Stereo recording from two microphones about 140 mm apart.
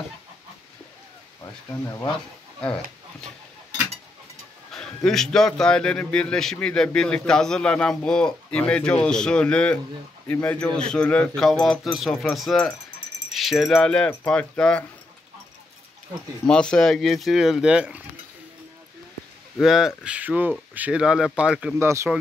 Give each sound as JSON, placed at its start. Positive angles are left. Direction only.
{"t": 1.4, "sound": "speech", "side_deg": 20}
{"t": 4.7, "sound": "a man's voice", "side_deg": 5}
{"t": 16.4, "sound": "speech", "side_deg": 5}
{"t": 19.6, "sound": "speech", "side_deg": -5}
{"t": 21.7, "sound": "speech", "side_deg": -20}